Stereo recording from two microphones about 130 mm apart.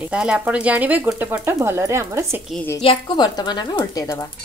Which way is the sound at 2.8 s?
45° left (ahead or behind).